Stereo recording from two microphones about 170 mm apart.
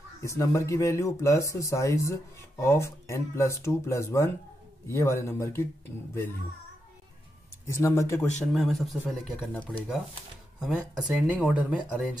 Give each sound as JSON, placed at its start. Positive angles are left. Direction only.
{"t": 0.2, "sound": "speech", "side_deg": 20}
{"t": 7.6, "sound": "speech", "side_deg": 15}
{"t": 8.5, "sound": "speech", "side_deg": 0}